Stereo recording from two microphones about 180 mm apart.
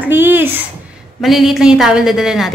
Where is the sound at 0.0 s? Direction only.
10° right (ahead or behind).